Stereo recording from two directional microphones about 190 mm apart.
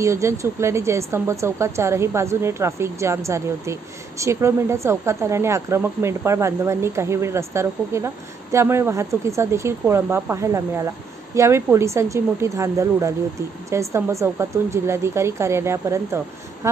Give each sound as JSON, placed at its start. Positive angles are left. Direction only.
{"t": 0.0, "sound": "speech", "side_deg": -15}